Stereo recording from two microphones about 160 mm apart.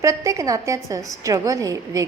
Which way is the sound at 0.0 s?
20° right (ahead or behind).